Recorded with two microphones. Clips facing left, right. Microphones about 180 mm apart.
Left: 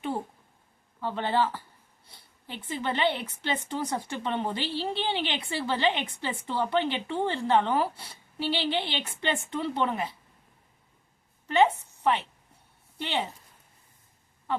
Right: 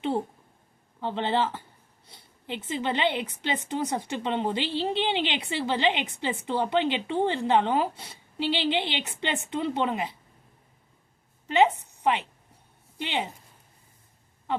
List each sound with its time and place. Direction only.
1.0 s a woman's voice: 20° right (ahead or behind)
11.4 s a woman's voice: 15° right (ahead or behind)